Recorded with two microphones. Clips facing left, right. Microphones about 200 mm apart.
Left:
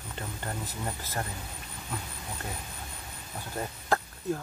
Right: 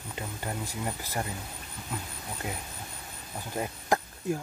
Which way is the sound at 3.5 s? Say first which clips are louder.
Right 2 dB; 15° right (ahead or behind).